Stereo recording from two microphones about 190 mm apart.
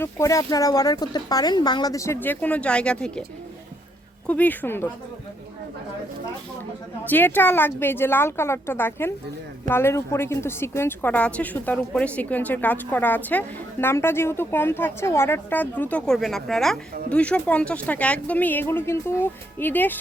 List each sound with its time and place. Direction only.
0.0 s a woman's voice: 15° left (ahead or behind)
4.3 s a woman's voice: 10° left (ahead or behind)
7.0 s a woman's voice: 10° left (ahead or behind)